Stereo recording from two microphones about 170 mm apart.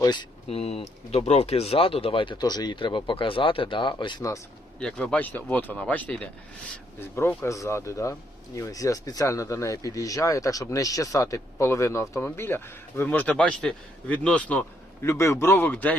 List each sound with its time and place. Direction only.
0.0 s speech: 25° left (ahead or behind)
4.8 s speech: 5° left (ahead or behind)